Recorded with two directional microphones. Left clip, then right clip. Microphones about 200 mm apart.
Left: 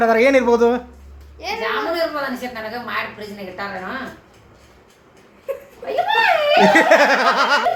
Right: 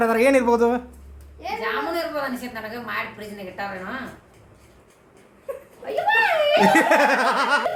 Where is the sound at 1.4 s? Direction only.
50° left (ahead or behind).